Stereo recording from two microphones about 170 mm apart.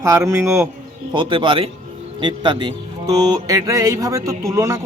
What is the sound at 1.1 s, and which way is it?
Speech, 30° right (ahead or behind).